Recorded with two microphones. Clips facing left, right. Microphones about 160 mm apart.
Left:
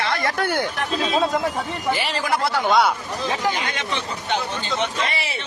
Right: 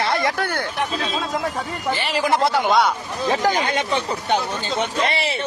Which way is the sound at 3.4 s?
40° right (ahead or behind).